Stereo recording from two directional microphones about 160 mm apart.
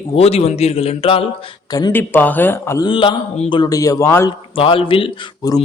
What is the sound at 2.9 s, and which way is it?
A man's voice, 30° left (ahead or behind).